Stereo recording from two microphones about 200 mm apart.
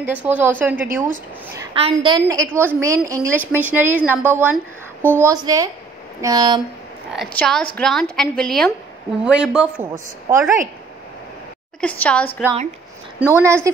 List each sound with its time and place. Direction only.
0.0 s a woman's voice: 10° right (ahead or behind)
1.7 s a woman's voice: 25° right (ahead or behind)
7.1 s a woman's voice: centre (ahead or behind)
11.8 s a woman's voice: 5° left (ahead or behind)
13.3 s a woman's voice: 15° right (ahead or behind)